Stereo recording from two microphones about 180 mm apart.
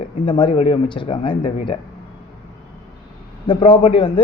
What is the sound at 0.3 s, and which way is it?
Speech, 25° left (ahead or behind).